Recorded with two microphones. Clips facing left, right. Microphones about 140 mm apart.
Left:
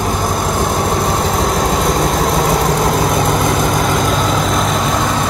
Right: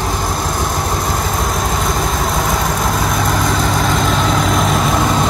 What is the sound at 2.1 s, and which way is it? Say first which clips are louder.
Vehicle: left 4 dB; 35° left (ahead or behind).